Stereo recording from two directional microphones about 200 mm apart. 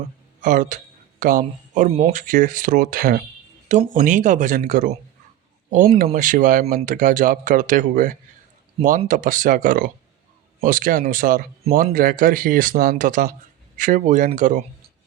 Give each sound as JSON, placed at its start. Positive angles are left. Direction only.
{"t": 0.4, "sound": "speech", "side_deg": -40}
{"t": 6.1, "sound": "speech", "side_deg": -40}